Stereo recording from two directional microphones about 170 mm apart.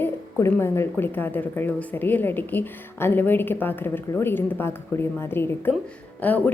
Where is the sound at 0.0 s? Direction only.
15° left (ahead or behind).